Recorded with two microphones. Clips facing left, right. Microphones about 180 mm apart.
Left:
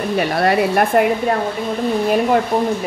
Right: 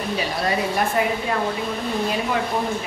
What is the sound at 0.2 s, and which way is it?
Speech, 60° left (ahead or behind).